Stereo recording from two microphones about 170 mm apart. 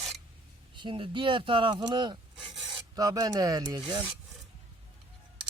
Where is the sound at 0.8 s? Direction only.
30° right (ahead or behind).